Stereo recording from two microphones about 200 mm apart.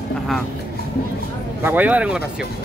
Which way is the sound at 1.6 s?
10° right (ahead or behind).